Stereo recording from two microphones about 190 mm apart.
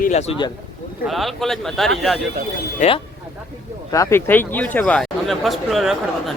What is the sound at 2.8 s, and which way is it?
Speech, 40° left (ahead or behind).